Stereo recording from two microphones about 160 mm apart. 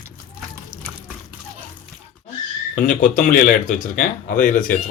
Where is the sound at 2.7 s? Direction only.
55° left (ahead or behind).